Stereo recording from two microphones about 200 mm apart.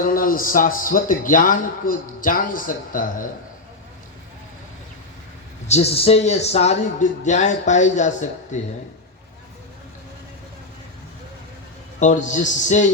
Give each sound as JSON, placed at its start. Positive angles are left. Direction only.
{"t": 0.0, "sound": "a man's voice", "side_deg": 45}
{"t": 5.6, "sound": "speech", "side_deg": 30}
{"t": 11.9, "sound": "speech", "side_deg": 35}